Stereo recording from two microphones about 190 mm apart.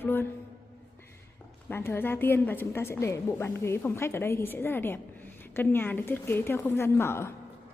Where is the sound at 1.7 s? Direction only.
10° left (ahead or behind).